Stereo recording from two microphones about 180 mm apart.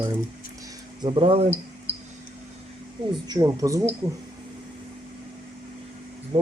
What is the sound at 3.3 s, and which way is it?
Speech, 20° right (ahead or behind).